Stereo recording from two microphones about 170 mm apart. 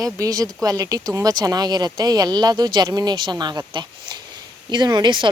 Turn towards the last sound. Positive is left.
turn(degrees=-30)  # may be behind; listen again after turning